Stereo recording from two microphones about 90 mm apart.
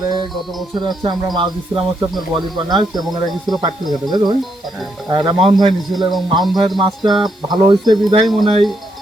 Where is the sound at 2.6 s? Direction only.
50° right (ahead or behind).